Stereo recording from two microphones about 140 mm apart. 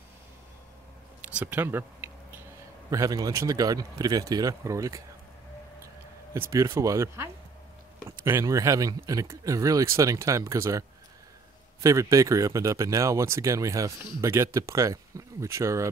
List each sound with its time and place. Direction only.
1.2 s a sound: 10° right (ahead or behind)
2.9 s speech: 25° right (ahead or behind)
6.5 s speech: 20° right (ahead or behind)